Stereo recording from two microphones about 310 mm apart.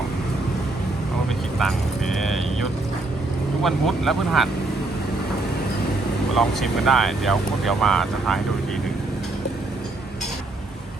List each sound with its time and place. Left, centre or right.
1.5 s speech: centre
3.6 s speech: centre
6.3 s speech: centre